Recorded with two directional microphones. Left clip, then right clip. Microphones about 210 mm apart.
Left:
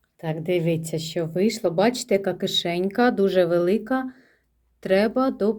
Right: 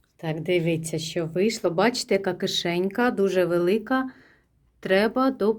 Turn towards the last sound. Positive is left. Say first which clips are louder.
# even
turn(degrees=-10)  # may be behind; listen again after turning